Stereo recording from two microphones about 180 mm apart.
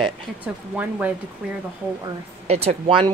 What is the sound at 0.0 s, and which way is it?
Speech, 10° right (ahead or behind).